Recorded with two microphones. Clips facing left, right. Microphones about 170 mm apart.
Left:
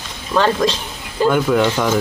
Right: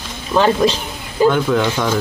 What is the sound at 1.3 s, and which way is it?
Speech, 10° left (ahead or behind).